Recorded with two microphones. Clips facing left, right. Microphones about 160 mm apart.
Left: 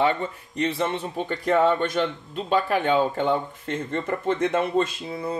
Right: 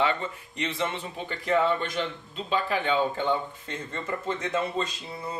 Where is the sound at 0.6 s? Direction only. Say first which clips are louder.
Left 6 dB; 40° left (ahead or behind).